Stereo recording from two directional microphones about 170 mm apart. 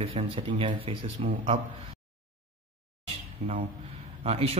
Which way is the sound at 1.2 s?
45° right (ahead or behind).